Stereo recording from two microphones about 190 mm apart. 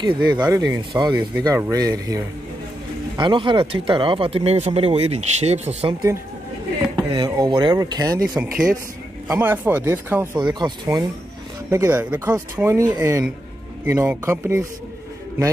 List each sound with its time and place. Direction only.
0.0 s speech: 20° right (ahead or behind)
7.0 s speech: 20° right (ahead or behind)
9.3 s speech: 10° right (ahead or behind)